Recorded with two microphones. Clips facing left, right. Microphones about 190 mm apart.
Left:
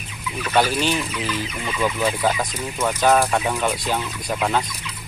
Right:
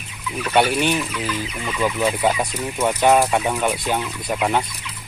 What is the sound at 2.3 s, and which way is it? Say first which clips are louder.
Speech: right 2 dB; 20° right (ahead or behind).